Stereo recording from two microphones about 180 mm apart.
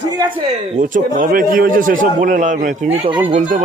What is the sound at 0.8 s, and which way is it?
A man's voice, 50° right (ahead or behind).